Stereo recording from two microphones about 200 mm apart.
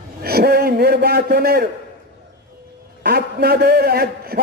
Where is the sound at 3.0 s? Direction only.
50° right (ahead or behind).